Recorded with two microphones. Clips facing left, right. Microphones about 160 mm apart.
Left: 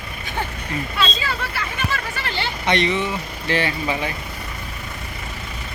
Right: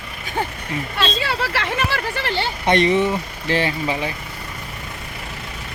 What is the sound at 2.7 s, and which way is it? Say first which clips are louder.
Speech: right 4 dB; 45° right (ahead or behind).